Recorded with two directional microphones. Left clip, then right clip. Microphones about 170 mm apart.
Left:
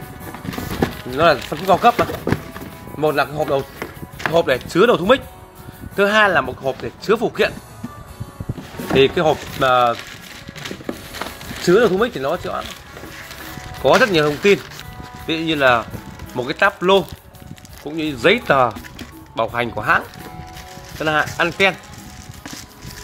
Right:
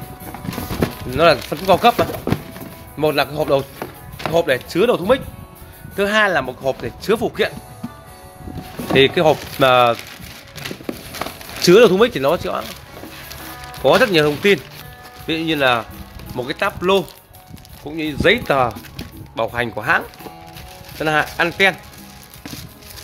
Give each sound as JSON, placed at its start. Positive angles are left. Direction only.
{"t": 1.1, "sound": "speech", "side_deg": -20}
{"t": 3.0, "sound": "music", "side_deg": -20}
{"t": 4.3, "sound": "speech", "side_deg": 0}
{"t": 6.6, "sound": "speech", "side_deg": -15}
{"t": 8.9, "sound": "speech", "side_deg": -20}
{"t": 11.6, "sound": "speech", "side_deg": -35}
{"t": 13.8, "sound": "speech", "side_deg": -10}